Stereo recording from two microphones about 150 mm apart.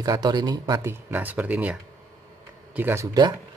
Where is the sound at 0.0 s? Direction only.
25° right (ahead or behind).